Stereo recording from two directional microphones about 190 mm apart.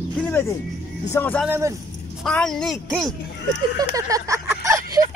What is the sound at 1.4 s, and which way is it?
Speech, 10° right (ahead or behind).